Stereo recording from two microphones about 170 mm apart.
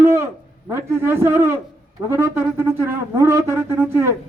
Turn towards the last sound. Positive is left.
turn(degrees=-15)  # may be behind; listen again after turning